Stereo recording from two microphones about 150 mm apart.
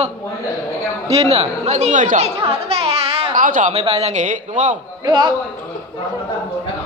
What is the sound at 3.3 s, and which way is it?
Speech, 60° right (ahead or behind).